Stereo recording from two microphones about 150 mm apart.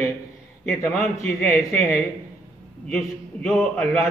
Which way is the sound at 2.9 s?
5° left (ahead or behind).